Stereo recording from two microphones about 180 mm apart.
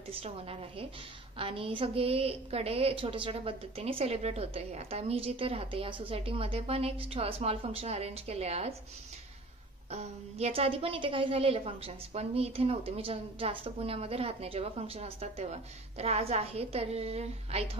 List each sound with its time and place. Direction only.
0.1 s a woman's voice: 30° right (ahead or behind)
9.8 s a woman's voice: 35° right (ahead or behind)